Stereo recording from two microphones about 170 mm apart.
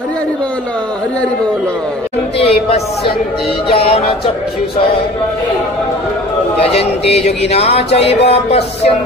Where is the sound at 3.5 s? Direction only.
35° left (ahead or behind).